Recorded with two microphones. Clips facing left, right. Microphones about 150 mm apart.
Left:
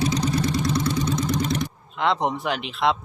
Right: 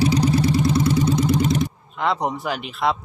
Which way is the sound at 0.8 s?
30° right (ahead or behind).